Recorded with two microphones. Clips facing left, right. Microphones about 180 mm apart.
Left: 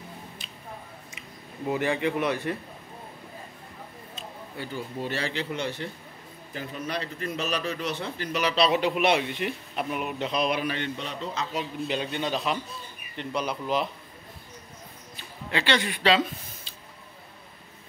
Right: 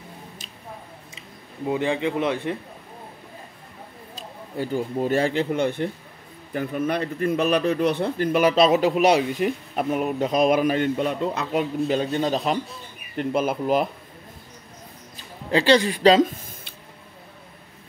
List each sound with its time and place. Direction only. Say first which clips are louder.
1.7 s a man's voice: right 3 dB; 20° right (ahead or behind)
4.1 s speech: right 6 dB; 45° right (ahead or behind)
12.0 s speech: right 6 dB; 40° right (ahead or behind)
15.5 s speech: right 8 dB; 35° right (ahead or behind)